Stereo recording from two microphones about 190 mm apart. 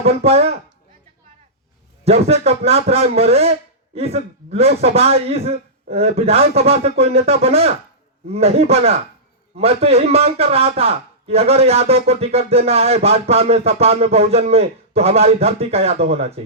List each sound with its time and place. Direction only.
0.0 s a man's voice: 35° right (ahead or behind)
2.0 s a man's voice: 30° right (ahead or behind)